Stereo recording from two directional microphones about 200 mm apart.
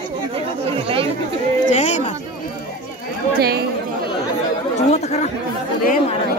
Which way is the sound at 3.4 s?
50° right (ahead or behind).